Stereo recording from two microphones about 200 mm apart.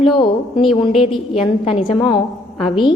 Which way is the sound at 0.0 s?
25° left (ahead or behind).